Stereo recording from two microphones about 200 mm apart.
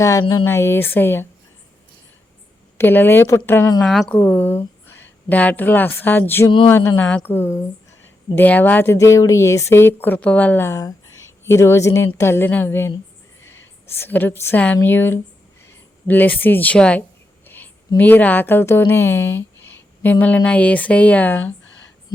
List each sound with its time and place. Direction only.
0.0 s speech: 15° left (ahead or behind)
2.7 s speech: 10° left (ahead or behind)
3.8 s a woman's voice: centre (ahead or behind)
13.4 s a sound: 70° left (ahead or behind)
13.9 s a woman's voice: 10° left (ahead or behind)